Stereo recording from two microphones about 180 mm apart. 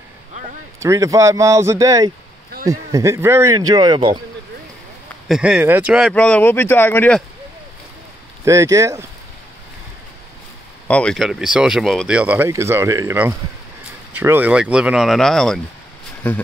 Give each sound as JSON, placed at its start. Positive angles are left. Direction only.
{"t": 0.7, "sound": "speech", "side_deg": -15}
{"t": 5.3, "sound": "speech", "side_deg": -5}
{"t": 6.1, "sound": "speech", "side_deg": 5}
{"t": 8.5, "sound": "speech", "side_deg": -15}
{"t": 10.9, "sound": "speech", "side_deg": 5}